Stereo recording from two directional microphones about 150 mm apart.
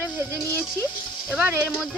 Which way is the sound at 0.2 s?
20° right (ahead or behind).